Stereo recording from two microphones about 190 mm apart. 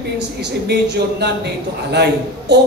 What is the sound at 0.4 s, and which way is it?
A man's voice, 60° right (ahead or behind).